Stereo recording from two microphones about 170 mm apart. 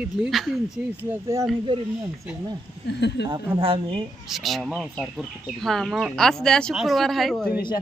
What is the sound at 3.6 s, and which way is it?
Speech, 30° right (ahead or behind).